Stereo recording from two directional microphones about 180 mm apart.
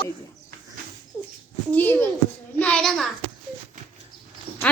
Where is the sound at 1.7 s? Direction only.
10° left (ahead or behind).